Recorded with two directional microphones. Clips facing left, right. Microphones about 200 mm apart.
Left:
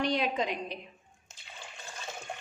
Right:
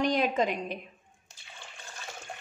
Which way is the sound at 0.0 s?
45° right (ahead or behind).